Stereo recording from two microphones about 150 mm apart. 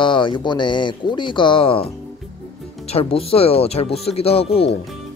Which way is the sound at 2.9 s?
40° left (ahead or behind).